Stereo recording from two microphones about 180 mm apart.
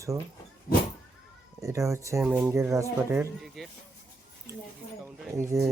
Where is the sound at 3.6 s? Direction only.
Centre (ahead or behind).